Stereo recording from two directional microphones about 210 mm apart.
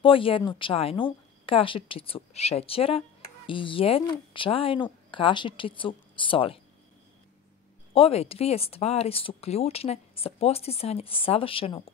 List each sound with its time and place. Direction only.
0.0 s speech: 25° left (ahead or behind)
7.9 s speech: 30° left (ahead or behind)